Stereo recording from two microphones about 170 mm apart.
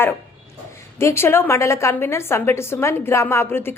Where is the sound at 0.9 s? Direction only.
15° left (ahead or behind).